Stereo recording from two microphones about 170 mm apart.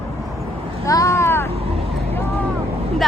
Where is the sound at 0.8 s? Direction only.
20° left (ahead or behind).